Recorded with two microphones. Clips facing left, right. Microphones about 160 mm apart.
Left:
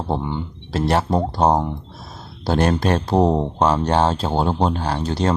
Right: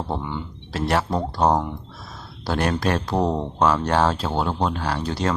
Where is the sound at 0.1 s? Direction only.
25° left (ahead or behind).